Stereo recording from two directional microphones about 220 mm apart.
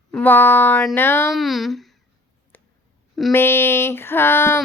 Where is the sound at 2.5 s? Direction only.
10° left (ahead or behind).